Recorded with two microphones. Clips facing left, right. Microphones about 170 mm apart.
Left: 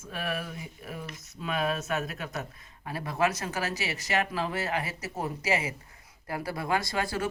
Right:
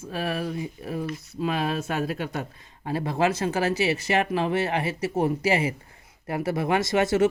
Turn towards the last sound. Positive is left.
turn(degrees=-20)  # may be behind; listen again after turning